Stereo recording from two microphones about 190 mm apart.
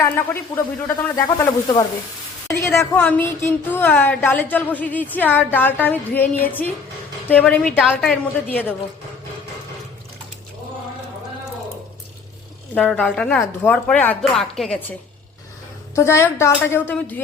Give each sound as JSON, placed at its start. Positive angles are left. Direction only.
{"t": 0.0, "sound": "speech", "side_deg": 10}
{"t": 12.7, "sound": "speech", "side_deg": 5}
{"t": 16.0, "sound": "speech", "side_deg": 15}